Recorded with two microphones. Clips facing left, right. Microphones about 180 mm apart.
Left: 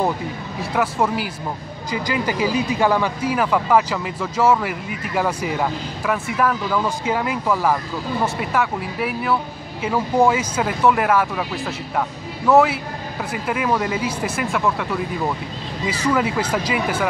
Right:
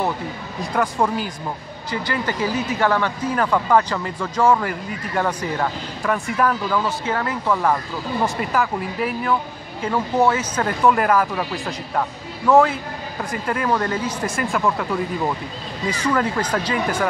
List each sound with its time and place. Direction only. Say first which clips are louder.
0.6 s speech: even; 5° left (ahead or behind)
6.8 s speech: left 1 dB; 15° left (ahead or behind)